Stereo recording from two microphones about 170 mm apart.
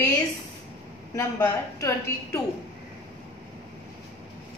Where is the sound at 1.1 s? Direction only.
15° left (ahead or behind).